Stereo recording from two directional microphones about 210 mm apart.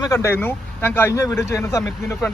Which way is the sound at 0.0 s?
15° left (ahead or behind).